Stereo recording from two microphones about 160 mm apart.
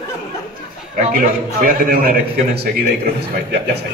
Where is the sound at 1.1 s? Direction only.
60° right (ahead or behind).